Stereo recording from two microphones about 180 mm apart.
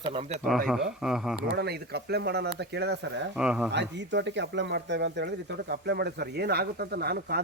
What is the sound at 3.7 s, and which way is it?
Speech, 75° right (ahead or behind).